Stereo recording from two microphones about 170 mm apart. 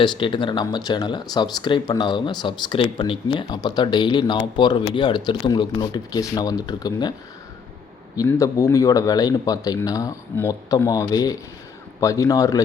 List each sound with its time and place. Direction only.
0.0 s speech: 25° left (ahead or behind)
8.1 s speech: 20° left (ahead or behind)